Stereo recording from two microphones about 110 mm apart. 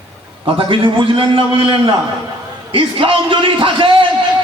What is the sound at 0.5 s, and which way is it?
A man's voice, 55° right (ahead or behind).